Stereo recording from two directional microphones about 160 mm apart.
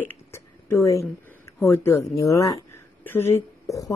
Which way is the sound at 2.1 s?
20° left (ahead or behind).